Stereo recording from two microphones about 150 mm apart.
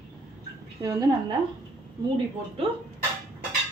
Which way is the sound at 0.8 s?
25° right (ahead or behind).